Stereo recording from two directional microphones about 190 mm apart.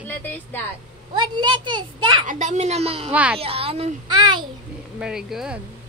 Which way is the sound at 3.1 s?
5° right (ahead or behind).